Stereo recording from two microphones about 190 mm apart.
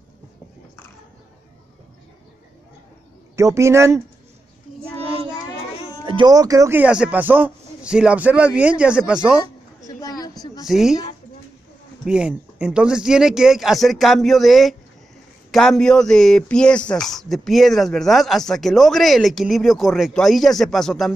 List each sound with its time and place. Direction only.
3.3 s speech: 15° right (ahead or behind)
6.0 s speech: 25° right (ahead or behind); by 9.4 s 5° right (ahead or behind)
9.8 s a sound: 20° left (ahead or behind)
10.7 s speech: centre (ahead or behind)
12.0 s speech: 5° right (ahead or behind)